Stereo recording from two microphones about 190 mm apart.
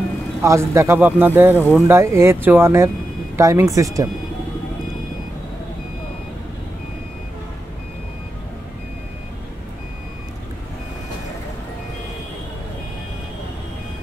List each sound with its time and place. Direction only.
0.4 s speech: 15° right (ahead or behind)